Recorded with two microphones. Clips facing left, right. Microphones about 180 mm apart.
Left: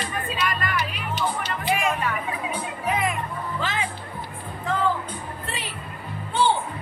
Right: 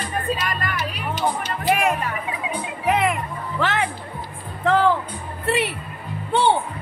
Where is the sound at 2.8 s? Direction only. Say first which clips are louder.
Right 6 dB; 75° right (ahead or behind).